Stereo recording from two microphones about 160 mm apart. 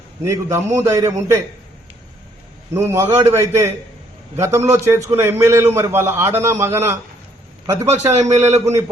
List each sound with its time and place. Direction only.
0.3 s a man's voice: 20° right (ahead or behind)
2.7 s a man's voice: 15° right (ahead or behind)
8.1 s a man's voice: 45° right (ahead or behind)